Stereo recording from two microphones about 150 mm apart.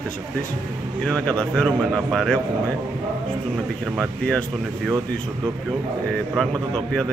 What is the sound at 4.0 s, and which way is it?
Speech, centre (ahead or behind).